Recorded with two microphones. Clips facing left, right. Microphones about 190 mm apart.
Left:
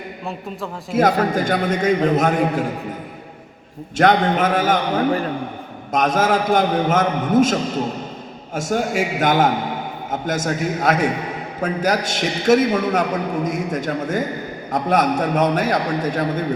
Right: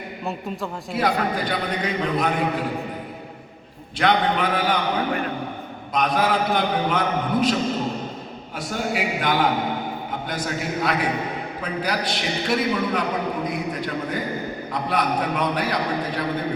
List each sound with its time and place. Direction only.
0.3 s a man's voice: centre (ahead or behind)
0.9 s a man's voice: 45° left (ahead or behind)
3.9 s a man's voice: 45° left (ahead or behind)